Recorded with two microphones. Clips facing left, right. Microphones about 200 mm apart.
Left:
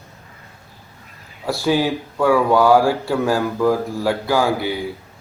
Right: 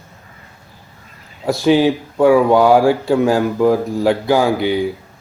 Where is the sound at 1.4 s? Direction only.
20° right (ahead or behind).